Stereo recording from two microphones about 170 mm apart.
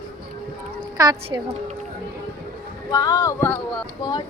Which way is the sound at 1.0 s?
25° right (ahead or behind).